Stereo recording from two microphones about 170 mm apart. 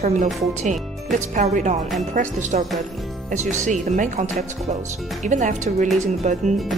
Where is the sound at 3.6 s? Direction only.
45° right (ahead or behind).